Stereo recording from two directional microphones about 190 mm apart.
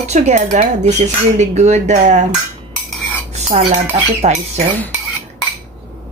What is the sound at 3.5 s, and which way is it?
Speech, 35° right (ahead or behind).